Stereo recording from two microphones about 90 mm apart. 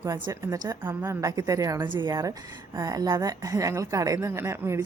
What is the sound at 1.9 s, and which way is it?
Speech, 60° right (ahead or behind).